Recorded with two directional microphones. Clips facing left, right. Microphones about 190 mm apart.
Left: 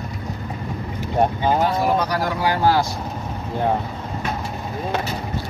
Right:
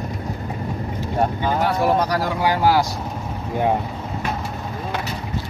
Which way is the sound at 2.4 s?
10° right (ahead or behind).